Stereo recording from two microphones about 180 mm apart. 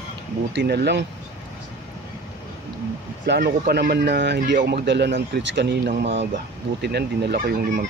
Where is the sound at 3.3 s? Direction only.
65° right (ahead or behind).